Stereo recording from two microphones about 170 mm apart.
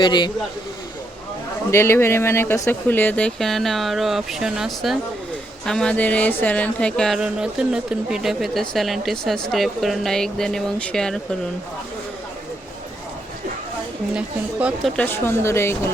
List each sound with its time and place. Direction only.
0.0 s a man's voice: 25° left (ahead or behind)
1.7 s a woman's voice: 15° left (ahead or behind)
14.1 s speech: 5° right (ahead or behind)
14.9 s a woman's voice: 15° left (ahead or behind)